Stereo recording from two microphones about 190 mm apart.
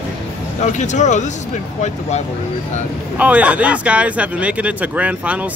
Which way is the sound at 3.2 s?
10° right (ahead or behind).